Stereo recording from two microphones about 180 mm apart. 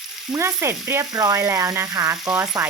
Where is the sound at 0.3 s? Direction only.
15° right (ahead or behind).